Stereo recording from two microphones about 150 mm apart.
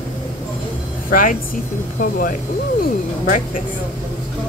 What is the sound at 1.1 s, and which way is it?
A woman's voice, 65° left (ahead or behind).